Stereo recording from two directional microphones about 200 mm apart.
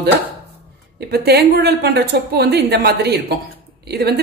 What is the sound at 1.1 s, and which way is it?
A woman's voice, 55° right (ahead or behind).